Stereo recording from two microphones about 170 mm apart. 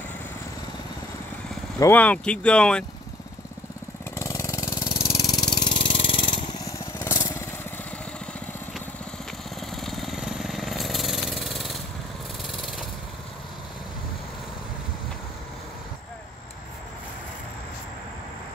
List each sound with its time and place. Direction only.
1.8 s speech: 10° left (ahead or behind)
4.1 s vehicle: 15° left (ahead or behind)
5.0 s mechanisms: 20° left (ahead or behind)
7.0 s lawn mower: 15° left (ahead or behind)
9.6 s vehicle: centre (ahead or behind)
12.4 s lawn mower: centre (ahead or behind)